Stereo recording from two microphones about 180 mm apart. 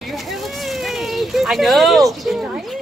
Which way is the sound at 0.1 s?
Centre (ahead or behind).